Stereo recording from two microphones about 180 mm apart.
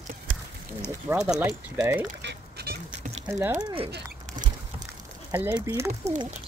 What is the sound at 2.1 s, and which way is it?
Goose, 65° right (ahead or behind).